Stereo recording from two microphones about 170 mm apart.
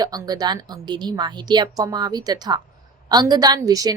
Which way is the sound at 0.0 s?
20° right (ahead or behind).